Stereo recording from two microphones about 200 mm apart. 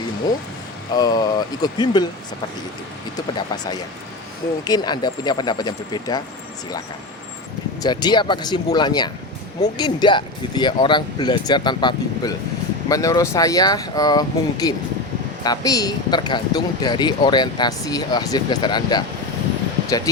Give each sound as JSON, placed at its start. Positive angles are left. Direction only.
{"t": 0.9, "sound": "speech", "side_deg": 20}
{"t": 3.3, "sound": "speech", "side_deg": 20}
{"t": 7.8, "sound": "speech", "side_deg": 20}